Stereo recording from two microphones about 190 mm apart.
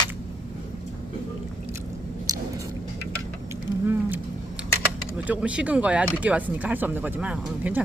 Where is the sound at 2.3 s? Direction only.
20° right (ahead or behind).